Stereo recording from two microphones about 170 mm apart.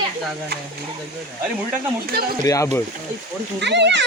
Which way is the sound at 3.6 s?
90° right.